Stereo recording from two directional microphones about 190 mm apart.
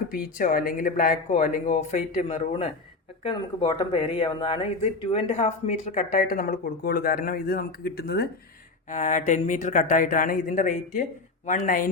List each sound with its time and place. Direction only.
0.1 s speech: 45° left (ahead or behind)
8.9 s speech: 40° left (ahead or behind)